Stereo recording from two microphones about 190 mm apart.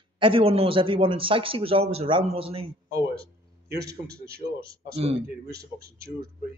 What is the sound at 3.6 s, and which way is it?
A man's voice, 55° right (ahead or behind).